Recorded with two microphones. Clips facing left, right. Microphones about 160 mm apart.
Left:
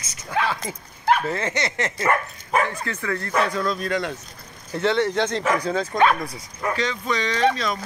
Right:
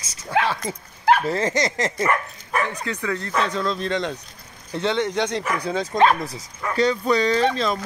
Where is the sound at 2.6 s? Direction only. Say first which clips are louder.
Right 1 dB; 20° right (ahead or behind).